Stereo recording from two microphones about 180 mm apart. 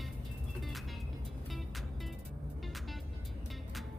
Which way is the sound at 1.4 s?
Centre (ahead or behind).